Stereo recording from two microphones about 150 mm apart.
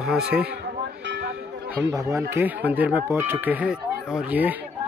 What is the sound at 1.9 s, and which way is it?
Speech, 20° right (ahead or behind).